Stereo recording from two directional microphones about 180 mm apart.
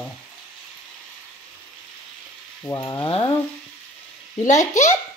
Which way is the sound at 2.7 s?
20° left (ahead or behind).